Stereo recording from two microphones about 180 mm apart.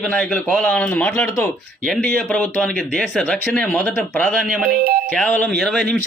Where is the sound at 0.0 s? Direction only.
5° left (ahead or behind).